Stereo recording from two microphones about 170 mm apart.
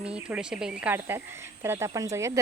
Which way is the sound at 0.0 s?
5° right (ahead or behind).